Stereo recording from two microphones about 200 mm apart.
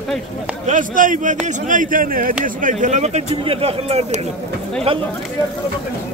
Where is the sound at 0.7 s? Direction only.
40° right (ahead or behind); by 5.0 s 25° right (ahead or behind).